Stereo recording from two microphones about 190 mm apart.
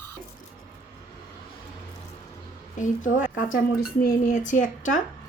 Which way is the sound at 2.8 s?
45° left (ahead or behind).